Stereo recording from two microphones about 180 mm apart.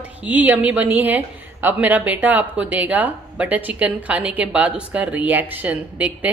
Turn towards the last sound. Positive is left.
turn(degrees=-5)  # may be behind; listen again after turning